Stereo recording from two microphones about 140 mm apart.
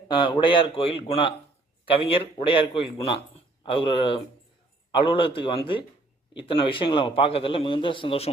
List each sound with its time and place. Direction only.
0.1 s a man's voice: 35° left (ahead or behind)